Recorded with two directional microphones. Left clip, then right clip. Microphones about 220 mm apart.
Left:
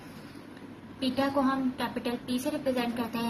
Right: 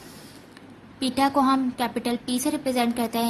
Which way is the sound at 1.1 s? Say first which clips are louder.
Right 7 dB; 50° right (ahead or behind).